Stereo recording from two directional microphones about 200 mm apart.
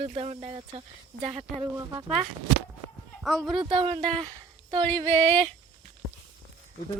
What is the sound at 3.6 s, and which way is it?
Speech, 25° right (ahead or behind).